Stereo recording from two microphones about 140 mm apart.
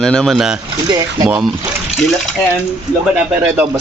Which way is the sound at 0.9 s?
30° right (ahead or behind).